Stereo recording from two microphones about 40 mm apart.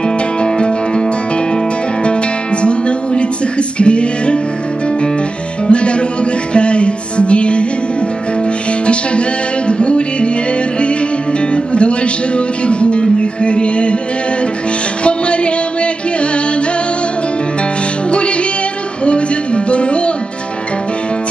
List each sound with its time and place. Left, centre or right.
0.4 s music: left
2.6 s music: left
5.7 s music: left
9.7 s music: left
11.5 s music: left
15.0 s a sound: left
19.0 s music: left